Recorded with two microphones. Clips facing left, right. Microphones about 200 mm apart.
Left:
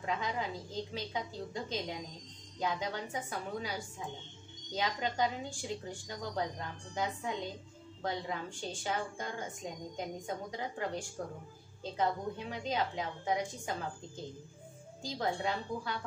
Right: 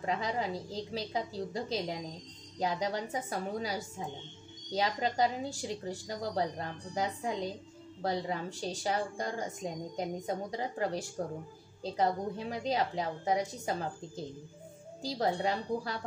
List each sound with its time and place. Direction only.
0.0 s a woman's voice: 35° right (ahead or behind)